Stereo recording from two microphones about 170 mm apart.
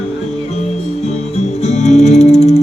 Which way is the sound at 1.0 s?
40° left (ahead or behind).